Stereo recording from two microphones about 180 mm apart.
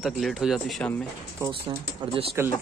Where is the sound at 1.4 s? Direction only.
30° right (ahead or behind).